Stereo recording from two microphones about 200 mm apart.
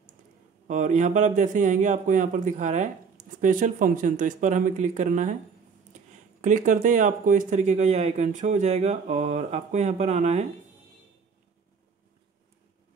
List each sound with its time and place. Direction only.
0.7 s speech: 40° right (ahead or behind)